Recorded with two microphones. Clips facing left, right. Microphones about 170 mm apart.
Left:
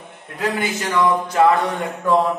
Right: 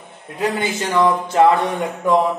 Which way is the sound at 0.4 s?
25° right (ahead or behind).